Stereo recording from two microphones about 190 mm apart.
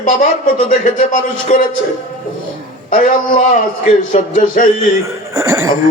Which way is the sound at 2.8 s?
45° left (ahead or behind).